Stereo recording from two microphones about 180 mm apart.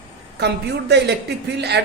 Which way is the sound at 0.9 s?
70° right (ahead or behind).